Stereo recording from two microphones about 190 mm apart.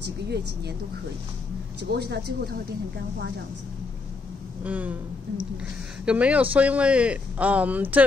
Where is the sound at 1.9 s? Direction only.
60° right (ahead or behind).